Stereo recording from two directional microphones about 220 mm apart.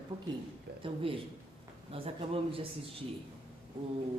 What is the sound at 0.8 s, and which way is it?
Speech, 25° right (ahead or behind).